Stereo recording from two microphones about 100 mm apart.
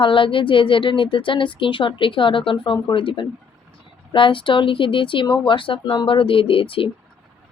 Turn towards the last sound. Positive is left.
turn(degrees=65)  # may be behind; listen again after turning